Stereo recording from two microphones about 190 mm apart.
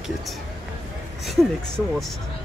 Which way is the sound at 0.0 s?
Centre (ahead or behind).